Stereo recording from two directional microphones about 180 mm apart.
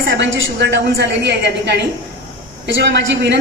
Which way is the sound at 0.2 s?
70° right (ahead or behind).